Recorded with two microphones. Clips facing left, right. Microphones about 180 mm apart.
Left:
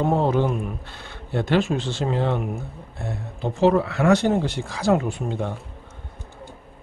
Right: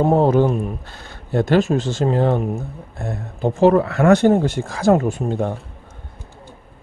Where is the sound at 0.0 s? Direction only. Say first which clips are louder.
Right 6 dB; 40° right (ahead or behind).